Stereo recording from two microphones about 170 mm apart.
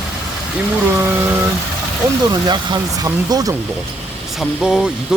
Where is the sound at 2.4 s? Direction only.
25° right (ahead or behind).